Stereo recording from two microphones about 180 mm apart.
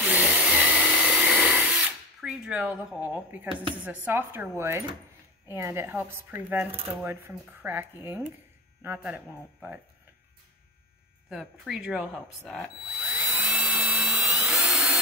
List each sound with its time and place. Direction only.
0.0 s tools: 10° right (ahead or behind)
4.0 s speech: 10° right (ahead or behind)
11.2 s drill: 5° right (ahead or behind)